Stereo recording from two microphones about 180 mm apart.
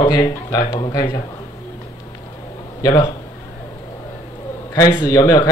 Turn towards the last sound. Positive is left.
turn(degrees=20)  # may be behind; listen again after turning